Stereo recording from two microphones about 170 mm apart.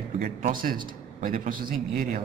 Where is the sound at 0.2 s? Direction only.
55° right (ahead or behind).